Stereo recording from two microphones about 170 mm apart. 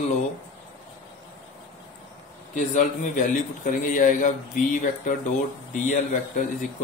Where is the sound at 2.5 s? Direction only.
50° left (ahead or behind).